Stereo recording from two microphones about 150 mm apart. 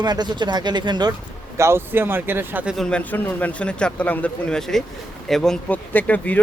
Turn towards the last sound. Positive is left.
turn(degrees=10)  # may be behind; listen again after turning